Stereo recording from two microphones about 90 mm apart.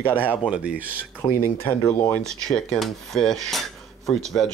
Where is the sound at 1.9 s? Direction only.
25° left (ahead or behind).